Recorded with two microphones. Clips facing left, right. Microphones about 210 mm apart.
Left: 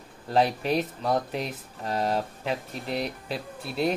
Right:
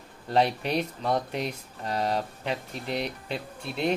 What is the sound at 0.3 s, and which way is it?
Speech, centre (ahead or behind).